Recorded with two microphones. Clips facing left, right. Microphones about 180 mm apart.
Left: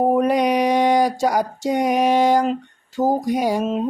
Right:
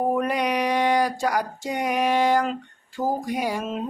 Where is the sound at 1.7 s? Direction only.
45° left (ahead or behind).